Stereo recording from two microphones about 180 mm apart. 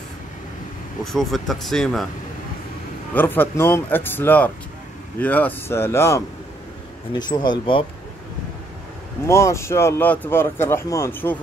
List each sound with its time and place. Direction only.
1.0 s speech: centre (ahead or behind)
3.2 s speech: 10° left (ahead or behind); by 7.8 s 25° left (ahead or behind)
9.3 s speech: 15° left (ahead or behind)